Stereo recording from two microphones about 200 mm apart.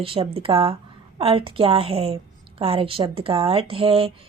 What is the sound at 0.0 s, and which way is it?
Speech, 30° right (ahead or behind).